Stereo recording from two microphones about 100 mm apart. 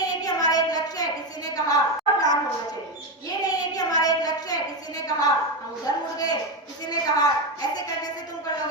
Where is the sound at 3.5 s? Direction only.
40° left (ahead or behind).